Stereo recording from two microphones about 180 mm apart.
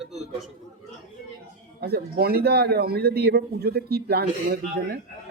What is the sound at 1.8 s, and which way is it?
A man's voice, 60° right (ahead or behind).